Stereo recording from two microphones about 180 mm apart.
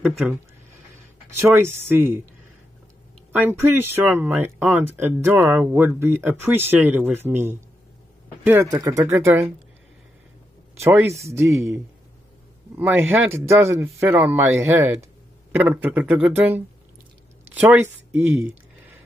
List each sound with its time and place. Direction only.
1.8 s speech: 10° right (ahead or behind)
3.3 s speech: 10° right (ahead or behind)
10.8 s speech: 15° right (ahead or behind)